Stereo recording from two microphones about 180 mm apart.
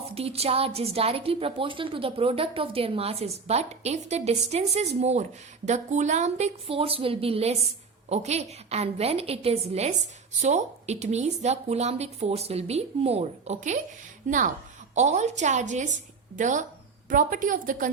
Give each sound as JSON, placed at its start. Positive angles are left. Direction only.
{"t": 0.1, "sound": "a woman's voice", "side_deg": -35}